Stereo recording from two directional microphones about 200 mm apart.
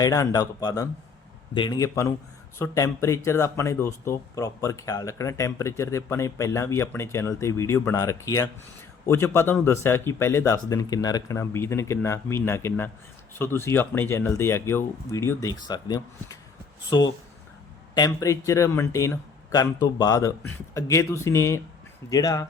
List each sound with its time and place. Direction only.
0.0 s speech: 15° left (ahead or behind)